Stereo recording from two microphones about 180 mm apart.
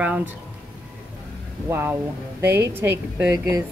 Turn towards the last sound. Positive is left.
turn(degrees=-15)  # may be behind; listen again after turning